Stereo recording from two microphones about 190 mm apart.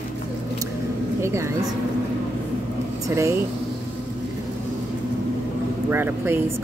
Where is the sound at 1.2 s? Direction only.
15° right (ahead or behind).